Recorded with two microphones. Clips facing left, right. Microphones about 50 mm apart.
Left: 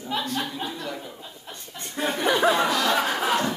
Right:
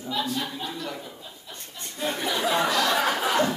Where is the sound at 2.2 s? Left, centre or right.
Left.